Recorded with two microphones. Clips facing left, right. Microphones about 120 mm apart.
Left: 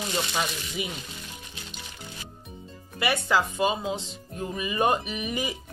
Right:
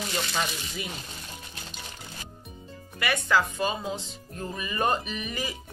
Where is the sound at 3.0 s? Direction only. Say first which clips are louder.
Left 1 dB; 25° left (ahead or behind).